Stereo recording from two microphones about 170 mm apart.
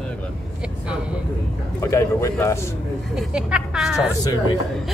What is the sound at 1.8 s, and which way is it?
Speech, 15° left (ahead or behind).